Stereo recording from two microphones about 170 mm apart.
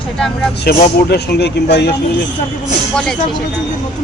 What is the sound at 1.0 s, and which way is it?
Speech, 75° left (ahead or behind).